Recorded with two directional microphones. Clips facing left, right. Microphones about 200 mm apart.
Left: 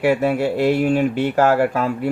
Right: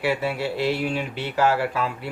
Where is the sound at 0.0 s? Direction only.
50° left (ahead or behind).